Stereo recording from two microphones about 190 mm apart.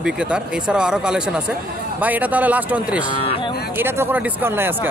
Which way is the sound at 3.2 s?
30° left (ahead or behind).